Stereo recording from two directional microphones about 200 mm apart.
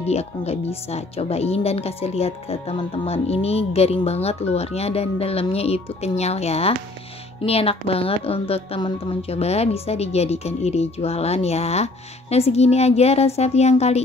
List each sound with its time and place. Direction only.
0.1 s speech: 30° left (ahead or behind)